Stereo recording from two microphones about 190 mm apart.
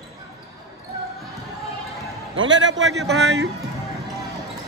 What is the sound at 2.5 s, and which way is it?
Speech, 70° right (ahead or behind).